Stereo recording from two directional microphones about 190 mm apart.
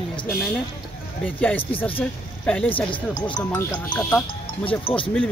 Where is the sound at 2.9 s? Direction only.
25° left (ahead or behind).